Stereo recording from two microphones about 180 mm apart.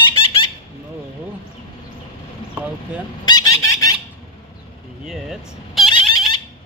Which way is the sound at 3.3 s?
20° left (ahead or behind).